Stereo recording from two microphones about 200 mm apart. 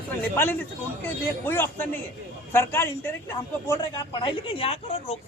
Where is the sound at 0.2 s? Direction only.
10° left (ahead or behind).